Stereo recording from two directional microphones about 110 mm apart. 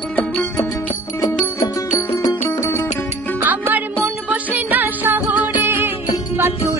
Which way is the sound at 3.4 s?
15° right (ahead or behind).